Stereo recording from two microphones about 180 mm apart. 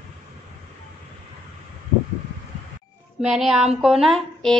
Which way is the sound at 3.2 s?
Centre (ahead or behind).